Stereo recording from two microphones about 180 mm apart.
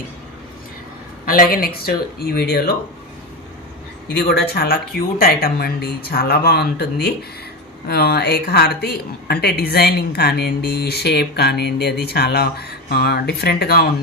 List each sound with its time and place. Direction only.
1.2 s a woman's voice: 50° left (ahead or behind)
4.1 s a woman's voice: 60° left (ahead or behind)